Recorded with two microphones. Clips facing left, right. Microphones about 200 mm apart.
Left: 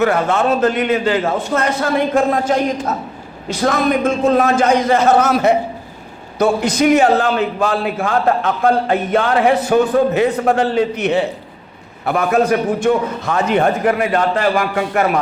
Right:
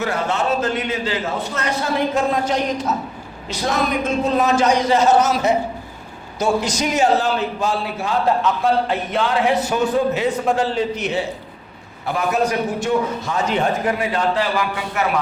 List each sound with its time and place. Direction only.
0.0 s a man's voice: 55° left (ahead or behind)